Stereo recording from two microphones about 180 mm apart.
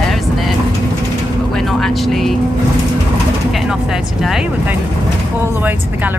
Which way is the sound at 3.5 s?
Centre (ahead or behind).